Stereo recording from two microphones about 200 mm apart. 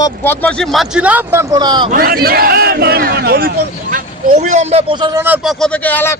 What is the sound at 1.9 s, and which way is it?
Speech, 50° right (ahead or behind).